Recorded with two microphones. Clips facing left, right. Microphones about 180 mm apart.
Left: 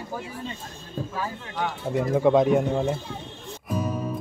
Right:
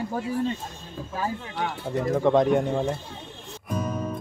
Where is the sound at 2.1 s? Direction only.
5° left (ahead or behind).